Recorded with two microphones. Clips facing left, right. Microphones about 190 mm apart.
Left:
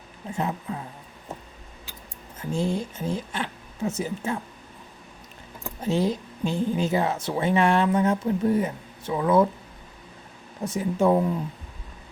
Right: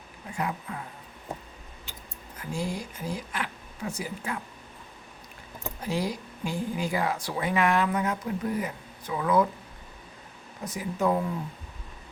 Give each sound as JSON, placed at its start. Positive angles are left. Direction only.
{"t": 0.3, "sound": "a woman's voice", "side_deg": 25}
{"t": 2.4, "sound": "speech", "side_deg": 25}
{"t": 5.8, "sound": "a woman's voice", "side_deg": 25}
{"t": 10.6, "sound": "a woman's voice", "side_deg": 25}